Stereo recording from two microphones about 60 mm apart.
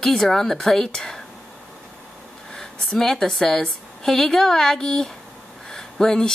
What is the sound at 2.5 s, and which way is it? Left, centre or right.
A woman's voice, centre.